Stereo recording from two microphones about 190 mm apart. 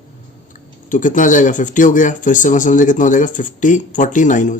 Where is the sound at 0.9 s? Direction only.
45° left (ahead or behind).